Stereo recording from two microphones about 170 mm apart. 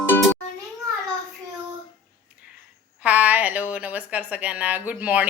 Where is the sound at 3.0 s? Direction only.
10° right (ahead or behind).